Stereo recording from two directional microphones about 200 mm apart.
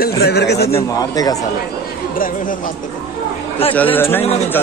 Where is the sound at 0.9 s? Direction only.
20° left (ahead or behind).